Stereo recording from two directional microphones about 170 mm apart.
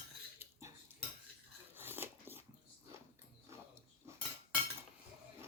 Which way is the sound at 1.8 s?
10° right (ahead or behind).